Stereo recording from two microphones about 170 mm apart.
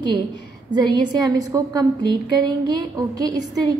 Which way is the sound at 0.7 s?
25° right (ahead or behind).